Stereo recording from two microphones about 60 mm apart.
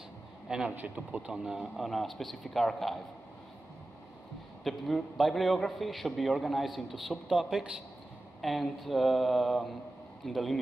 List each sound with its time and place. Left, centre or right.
0.5 s a man's voice: centre
0.7 s speech: right
1.3 s a man's voice: centre
4.6 s a man's voice: centre
8.4 s a man's voice: centre